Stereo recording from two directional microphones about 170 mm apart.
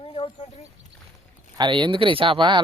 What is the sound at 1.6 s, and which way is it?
Speech, 30° right (ahead or behind).